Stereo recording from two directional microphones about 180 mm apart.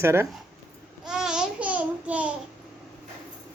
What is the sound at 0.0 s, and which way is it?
Speech, 15° right (ahead or behind).